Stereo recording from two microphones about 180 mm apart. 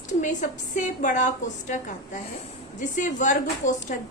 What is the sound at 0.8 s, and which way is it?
A woman's voice, 45° left (ahead or behind).